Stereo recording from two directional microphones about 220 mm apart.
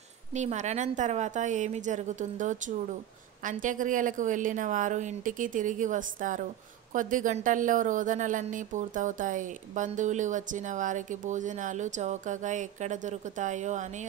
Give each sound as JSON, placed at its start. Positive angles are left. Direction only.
{"t": 0.3, "sound": "a woman's voice", "side_deg": -30}